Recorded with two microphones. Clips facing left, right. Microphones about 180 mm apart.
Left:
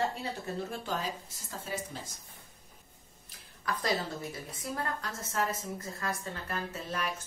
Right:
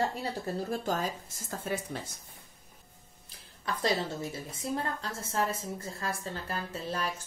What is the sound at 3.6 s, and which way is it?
A woman's voice, 25° right (ahead or behind).